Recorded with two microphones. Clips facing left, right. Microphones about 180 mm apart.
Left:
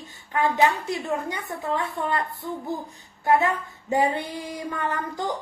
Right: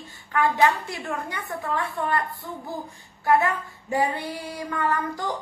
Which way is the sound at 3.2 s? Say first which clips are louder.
Even; 20° left (ahead or behind).